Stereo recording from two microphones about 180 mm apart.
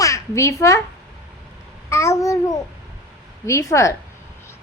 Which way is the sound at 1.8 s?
15° left (ahead or behind).